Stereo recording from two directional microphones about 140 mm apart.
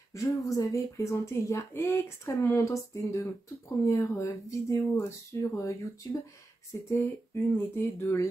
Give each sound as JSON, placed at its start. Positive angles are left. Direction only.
{"t": 0.1, "sound": "speech", "side_deg": 20}